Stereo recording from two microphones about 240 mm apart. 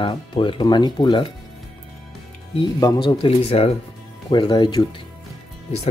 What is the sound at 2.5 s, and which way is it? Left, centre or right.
Speech, centre.